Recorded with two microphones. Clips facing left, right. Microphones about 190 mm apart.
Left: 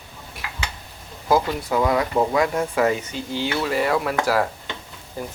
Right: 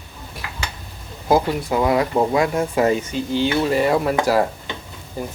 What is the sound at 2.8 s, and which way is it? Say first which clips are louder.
Speech: right 3 dB; 25° right (ahead or behind).